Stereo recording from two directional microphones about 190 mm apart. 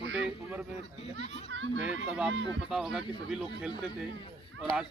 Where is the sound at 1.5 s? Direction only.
75° right (ahead or behind).